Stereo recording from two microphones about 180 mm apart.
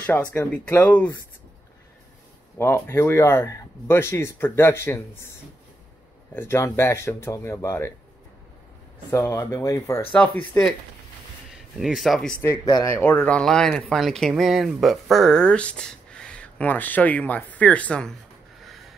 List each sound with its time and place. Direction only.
0.0 s speech: 10° left (ahead or behind)
2.6 s speech: 15° left (ahead or behind)
6.3 s speech: 15° left (ahead or behind)
9.1 s speech: 15° left (ahead or behind)
11.8 s speech: centre (ahead or behind)
12.6 s speech: 25° left (ahead or behind)
12.9 s speech: 10° left (ahead or behind)
18.6 s a sound: centre (ahead or behind)